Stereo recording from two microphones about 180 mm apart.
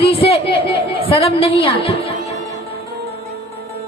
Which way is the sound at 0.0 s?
30° left (ahead or behind).